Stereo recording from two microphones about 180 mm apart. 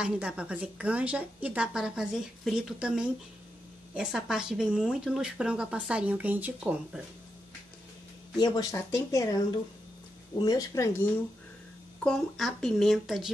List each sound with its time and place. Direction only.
0.0 s a woman's voice: 5° right (ahead or behind)
8.4 s speech: 20° left (ahead or behind)
10.4 s speech: 20° left (ahead or behind)
12.0 s a woman's voice: 5° left (ahead or behind)